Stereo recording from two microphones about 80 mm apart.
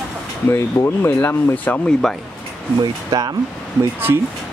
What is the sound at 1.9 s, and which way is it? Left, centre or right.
Speech, centre.